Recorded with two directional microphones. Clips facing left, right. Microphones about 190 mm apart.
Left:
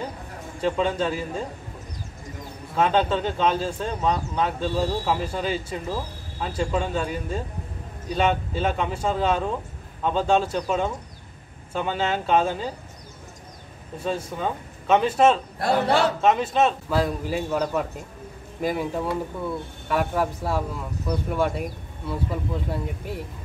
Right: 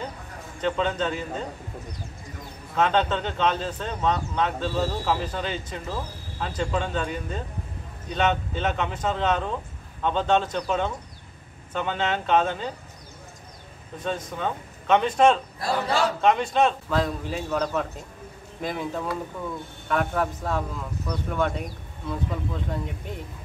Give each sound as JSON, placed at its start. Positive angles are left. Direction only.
{"t": 0.6, "sound": "speech", "side_deg": 10}
{"t": 2.7, "sound": "speech", "side_deg": 10}
{"t": 13.9, "sound": "speech", "side_deg": 10}
{"t": 15.6, "sound": "a man's voice", "side_deg": 60}
{"t": 16.2, "sound": "speech", "side_deg": 5}